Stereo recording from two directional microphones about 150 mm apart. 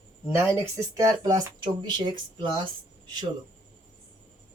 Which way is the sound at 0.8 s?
25° right (ahead or behind).